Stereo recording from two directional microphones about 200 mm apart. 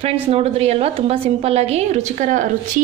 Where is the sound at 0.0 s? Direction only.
30° right (ahead or behind).